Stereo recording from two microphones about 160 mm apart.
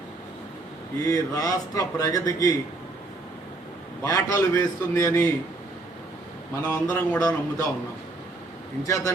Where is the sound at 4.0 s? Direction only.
20° left (ahead or behind).